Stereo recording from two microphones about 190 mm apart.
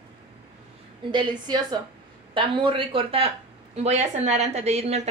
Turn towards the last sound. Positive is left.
turn(degrees=-35)  # may be behind; listen again after turning